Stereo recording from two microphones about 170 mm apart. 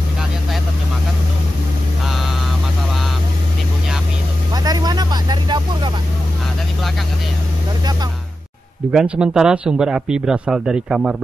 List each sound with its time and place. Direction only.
4.6 s vehicle: 25° right (ahead or behind)
8.9 s a man's voice: 5° right (ahead or behind)